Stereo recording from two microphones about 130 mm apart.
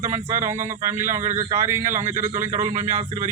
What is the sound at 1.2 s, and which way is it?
Speech, 70° right (ahead or behind).